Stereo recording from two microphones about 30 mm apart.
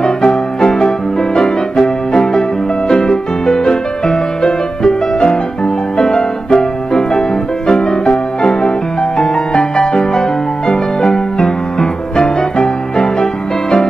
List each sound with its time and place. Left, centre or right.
0.0 s music: left